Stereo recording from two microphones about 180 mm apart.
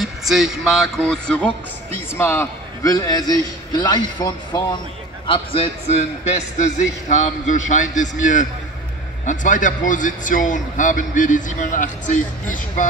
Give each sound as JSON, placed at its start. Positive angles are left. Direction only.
{"t": 0.0, "sound": "a man's voice", "side_deg": 0}
{"t": 6.6, "sound": "a man's voice", "side_deg": 40}